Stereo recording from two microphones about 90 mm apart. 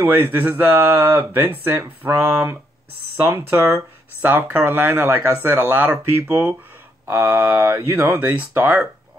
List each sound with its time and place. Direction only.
0.0 s speech: 20° right (ahead or behind)